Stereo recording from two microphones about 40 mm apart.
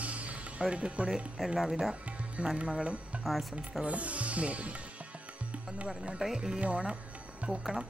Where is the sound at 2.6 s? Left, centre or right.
Right.